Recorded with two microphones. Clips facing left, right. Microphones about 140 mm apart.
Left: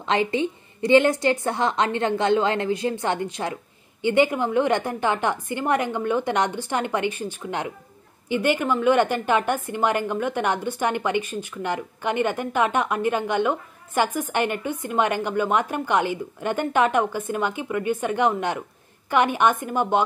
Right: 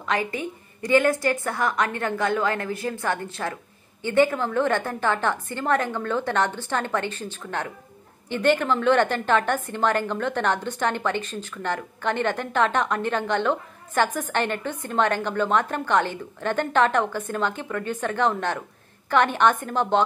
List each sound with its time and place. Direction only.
0.0 s a woman's voice: 25° left (ahead or behind)